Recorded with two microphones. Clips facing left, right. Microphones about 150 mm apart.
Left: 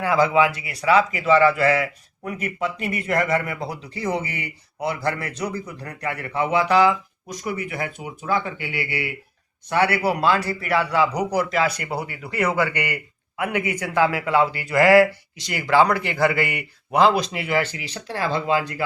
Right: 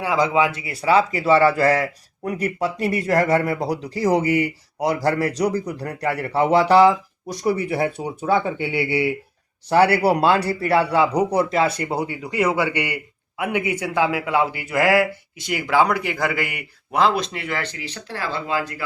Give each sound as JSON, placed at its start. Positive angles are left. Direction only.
{"t": 0.0, "sound": "a man's voice", "side_deg": -15}